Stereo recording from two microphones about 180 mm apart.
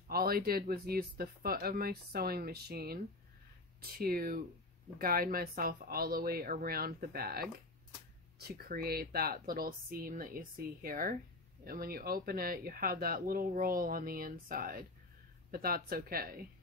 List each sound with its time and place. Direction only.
0.1 s speech: 55° right (ahead or behind)
4.0 s speech: 55° right (ahead or behind)